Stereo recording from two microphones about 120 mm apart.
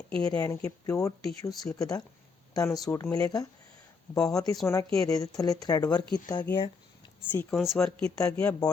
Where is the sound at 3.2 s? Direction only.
30° left (ahead or behind).